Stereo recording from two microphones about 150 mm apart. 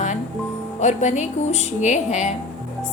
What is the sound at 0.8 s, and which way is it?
A woman's voice, 50° left (ahead or behind).